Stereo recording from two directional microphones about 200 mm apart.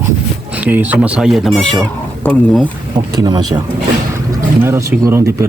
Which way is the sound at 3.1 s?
20° right (ahead or behind).